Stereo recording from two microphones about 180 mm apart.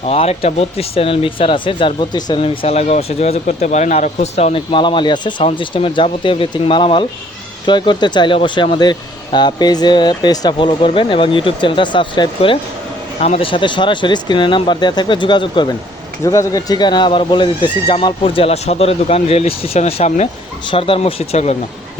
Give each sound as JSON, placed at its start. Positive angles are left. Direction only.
{"t": 0.0, "sound": "speech", "side_deg": 35}
{"t": 13.1, "sound": "speech", "side_deg": 35}